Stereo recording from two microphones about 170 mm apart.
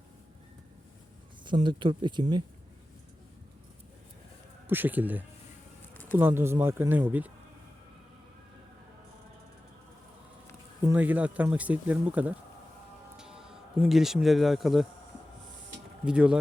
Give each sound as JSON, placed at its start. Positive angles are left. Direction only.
{"t": 1.6, "sound": "speech", "side_deg": -25}
{"t": 4.6, "sound": "speech", "side_deg": -10}
{"t": 10.8, "sound": "speech", "side_deg": -10}
{"t": 16.0, "sound": "speech", "side_deg": -5}